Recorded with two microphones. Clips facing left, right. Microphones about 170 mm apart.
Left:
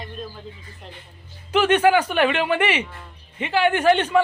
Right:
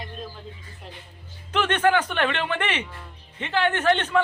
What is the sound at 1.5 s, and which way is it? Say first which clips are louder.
Speech: left 5 dB; 10° left (ahead or behind).